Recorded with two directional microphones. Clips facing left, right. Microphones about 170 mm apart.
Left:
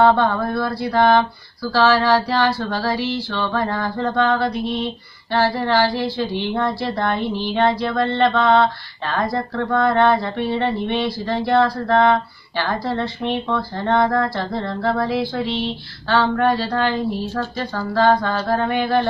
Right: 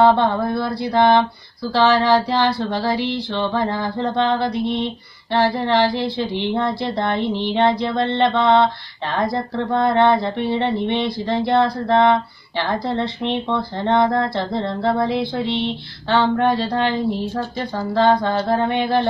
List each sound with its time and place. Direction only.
0.0 s speech: 25° right (ahead or behind)